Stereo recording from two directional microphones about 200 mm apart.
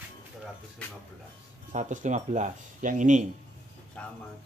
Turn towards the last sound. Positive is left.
turn(degrees=5)  # may be behind; listen again after turning